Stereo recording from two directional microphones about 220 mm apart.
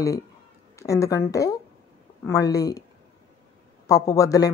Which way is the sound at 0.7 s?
15° left (ahead or behind).